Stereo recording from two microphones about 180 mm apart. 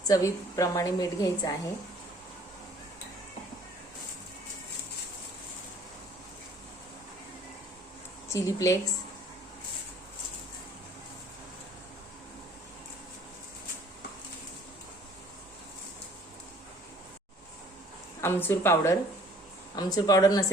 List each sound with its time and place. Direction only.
0.1 s a woman's voice: 15° left (ahead or behind)
8.3 s speech: 20° left (ahead or behind)
18.2 s a woman's voice: 10° left (ahead or behind)